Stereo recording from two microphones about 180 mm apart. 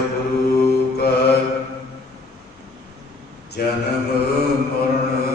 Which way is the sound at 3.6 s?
60° left (ahead or behind).